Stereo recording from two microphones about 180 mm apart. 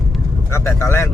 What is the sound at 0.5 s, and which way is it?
Speech, 15° left (ahead or behind).